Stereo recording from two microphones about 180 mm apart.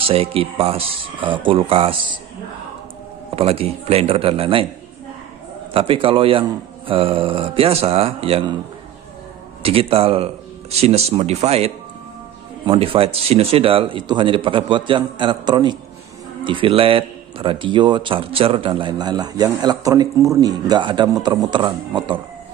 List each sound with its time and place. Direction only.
0.0 s speech: 30° right (ahead or behind)
3.3 s speech: 35° right (ahead or behind)
5.7 s a man's voice: 30° right (ahead or behind)
9.6 s a man's voice: 30° right (ahead or behind)